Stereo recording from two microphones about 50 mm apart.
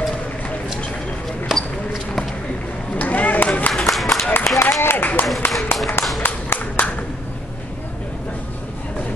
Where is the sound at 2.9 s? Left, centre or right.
Left.